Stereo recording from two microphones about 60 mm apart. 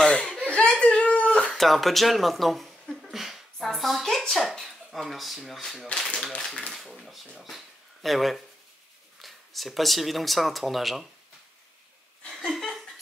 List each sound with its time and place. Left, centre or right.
0.0 s chuckle: centre
0.5 s whimper: centre
1.5 s speech: centre
3.1 s a sound: centre
5.6 s speech: centre
6.7 s speech: centre
12.3 s laughter: centre